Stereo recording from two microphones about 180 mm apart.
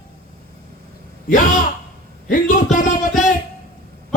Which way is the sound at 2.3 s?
50° left (ahead or behind).